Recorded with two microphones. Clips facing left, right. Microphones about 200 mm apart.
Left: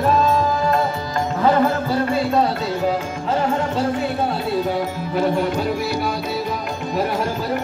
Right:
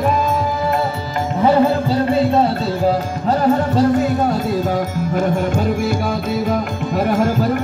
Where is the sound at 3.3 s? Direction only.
40° right (ahead or behind).